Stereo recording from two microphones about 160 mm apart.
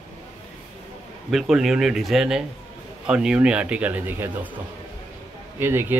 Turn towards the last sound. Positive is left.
turn(degrees=-15)  # may be behind; listen again after turning